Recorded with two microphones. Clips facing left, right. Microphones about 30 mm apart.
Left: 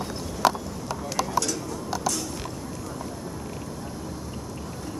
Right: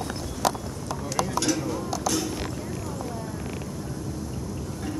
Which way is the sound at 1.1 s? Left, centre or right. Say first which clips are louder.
Left 1 dB; centre.